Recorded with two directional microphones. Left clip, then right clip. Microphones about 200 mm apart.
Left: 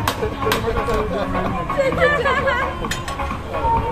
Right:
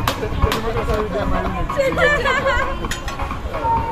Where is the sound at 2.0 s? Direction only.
60° right (ahead or behind).